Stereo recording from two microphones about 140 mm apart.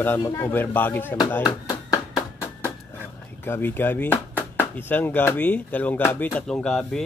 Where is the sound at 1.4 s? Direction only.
30° left (ahead or behind).